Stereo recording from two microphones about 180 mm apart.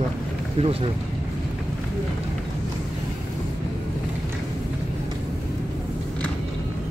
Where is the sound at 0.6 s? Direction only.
35° right (ahead or behind).